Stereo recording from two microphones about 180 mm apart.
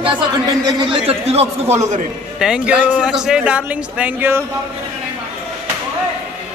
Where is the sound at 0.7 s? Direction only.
25° right (ahead or behind).